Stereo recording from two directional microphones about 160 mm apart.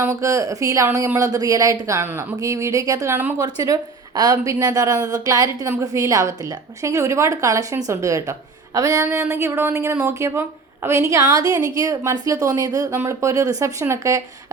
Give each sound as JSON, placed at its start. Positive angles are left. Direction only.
{"t": 0.0, "sound": "a woman's voice", "side_deg": -20}